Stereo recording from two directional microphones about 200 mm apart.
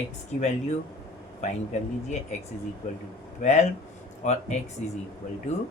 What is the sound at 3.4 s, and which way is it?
Speech, 35° left (ahead or behind).